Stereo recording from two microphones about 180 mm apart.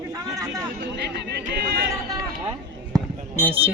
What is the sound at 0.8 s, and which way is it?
Speech, 65° right (ahead or behind).